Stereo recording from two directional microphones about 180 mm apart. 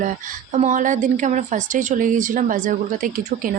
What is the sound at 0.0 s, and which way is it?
A woman's voice, 45° right (ahead or behind).